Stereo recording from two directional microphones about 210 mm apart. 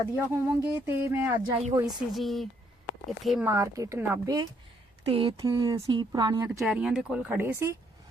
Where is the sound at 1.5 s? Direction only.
20° right (ahead or behind).